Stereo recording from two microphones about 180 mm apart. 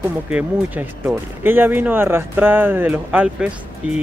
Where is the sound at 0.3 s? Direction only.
10° right (ahead or behind).